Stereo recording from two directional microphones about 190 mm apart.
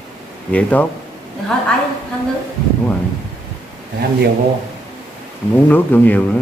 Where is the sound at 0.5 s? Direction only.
10° left (ahead or behind).